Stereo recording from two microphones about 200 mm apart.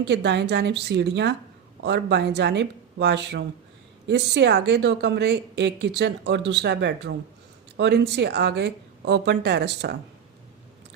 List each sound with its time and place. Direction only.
0.0 s a woman's voice: 60° right (ahead or behind)